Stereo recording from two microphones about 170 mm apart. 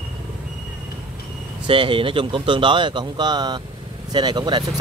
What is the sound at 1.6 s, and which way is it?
Speech, 30° right (ahead or behind).